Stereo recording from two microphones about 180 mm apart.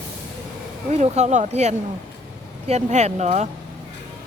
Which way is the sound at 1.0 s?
40° right (ahead or behind).